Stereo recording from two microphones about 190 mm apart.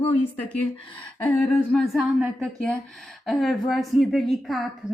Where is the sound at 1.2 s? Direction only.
5° left (ahead or behind).